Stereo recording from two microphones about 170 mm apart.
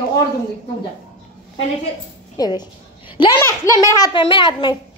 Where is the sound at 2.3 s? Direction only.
25° left (ahead or behind).